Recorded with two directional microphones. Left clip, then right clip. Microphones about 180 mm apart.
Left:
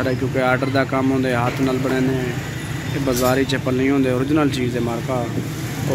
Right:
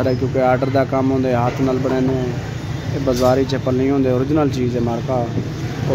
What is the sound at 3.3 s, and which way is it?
Speech, centre (ahead or behind).